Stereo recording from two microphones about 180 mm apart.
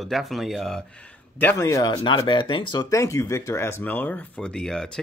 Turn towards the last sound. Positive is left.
turn(degrees=5)  # may be behind; listen again after turning